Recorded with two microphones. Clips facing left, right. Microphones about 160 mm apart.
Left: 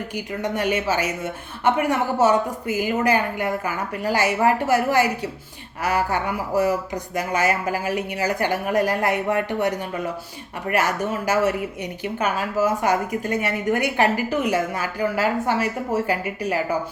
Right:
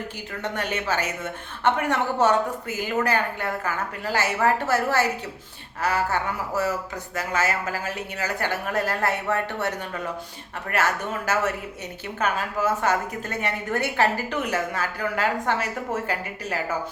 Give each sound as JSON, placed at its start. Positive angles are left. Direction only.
{"t": 0.4, "sound": "speech", "side_deg": 10}